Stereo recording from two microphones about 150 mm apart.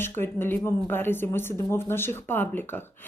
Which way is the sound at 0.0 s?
15° left (ahead or behind).